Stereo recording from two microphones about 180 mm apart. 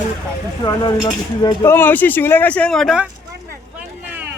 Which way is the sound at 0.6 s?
20° left (ahead or behind).